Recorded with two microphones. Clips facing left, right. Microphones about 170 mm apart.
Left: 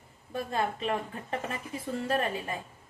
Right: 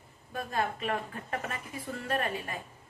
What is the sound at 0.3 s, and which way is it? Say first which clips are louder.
A woman's voice: left 2 dB; 30° left (ahead or behind).